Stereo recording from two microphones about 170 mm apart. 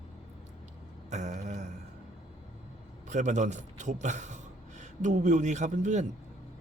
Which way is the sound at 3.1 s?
45° right (ahead or behind).